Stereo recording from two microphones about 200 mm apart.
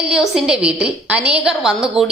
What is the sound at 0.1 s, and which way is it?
A woman's voice, 5° right (ahead or behind).